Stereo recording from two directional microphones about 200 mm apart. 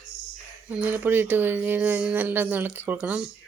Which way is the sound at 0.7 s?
5° right (ahead or behind).